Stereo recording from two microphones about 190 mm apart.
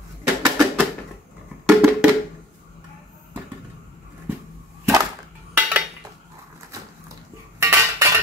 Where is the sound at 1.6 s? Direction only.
Centre (ahead or behind).